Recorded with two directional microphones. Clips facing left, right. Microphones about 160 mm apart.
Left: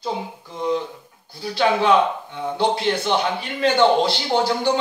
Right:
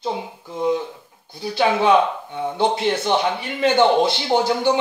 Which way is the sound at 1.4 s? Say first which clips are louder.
Right 1 dB; 20° right (ahead or behind).